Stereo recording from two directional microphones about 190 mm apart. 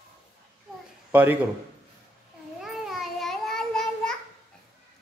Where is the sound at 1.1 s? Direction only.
10° right (ahead or behind).